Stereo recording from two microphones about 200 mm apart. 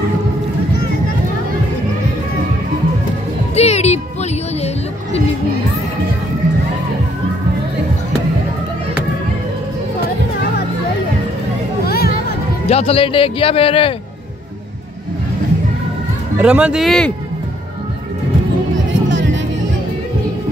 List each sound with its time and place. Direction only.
3.5 s music: 30° left (ahead or behind)
11.8 s a sound: 50° left (ahead or behind)
12.6 s speech: 30° left (ahead or behind)
16.3 s speech: 5° right (ahead or behind)
19.0 s music: 65° right (ahead or behind)